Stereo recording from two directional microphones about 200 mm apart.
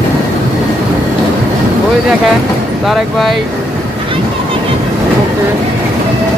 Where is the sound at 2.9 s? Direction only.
Centre (ahead or behind).